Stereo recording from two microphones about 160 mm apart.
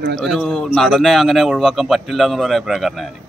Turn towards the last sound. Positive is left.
turn(degrees=0)  # may be behind; listen again after turning